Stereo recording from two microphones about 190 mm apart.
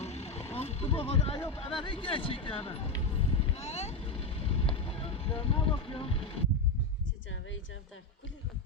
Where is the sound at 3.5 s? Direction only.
35° left (ahead or behind).